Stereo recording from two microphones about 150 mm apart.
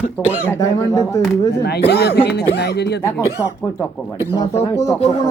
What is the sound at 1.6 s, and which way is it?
Speech, 90° left.